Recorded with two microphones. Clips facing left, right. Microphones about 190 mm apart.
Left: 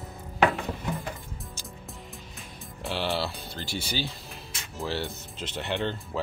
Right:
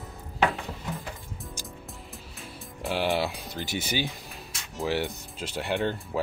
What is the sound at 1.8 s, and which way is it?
Music, centre (ahead or behind).